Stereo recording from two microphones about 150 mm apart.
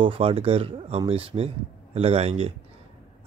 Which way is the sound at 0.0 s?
35° right (ahead or behind).